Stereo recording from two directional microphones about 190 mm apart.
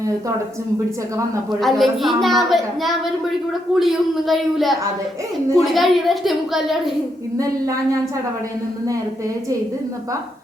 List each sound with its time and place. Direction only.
1.6 s a woman's voice: centre (ahead or behind)
7.3 s a woman's voice: 15° right (ahead or behind)